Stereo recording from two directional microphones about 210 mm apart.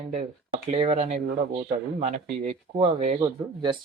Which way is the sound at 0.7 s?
30° right (ahead or behind).